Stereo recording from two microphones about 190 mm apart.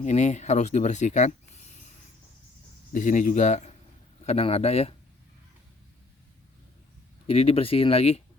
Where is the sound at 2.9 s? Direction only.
45° left (ahead or behind).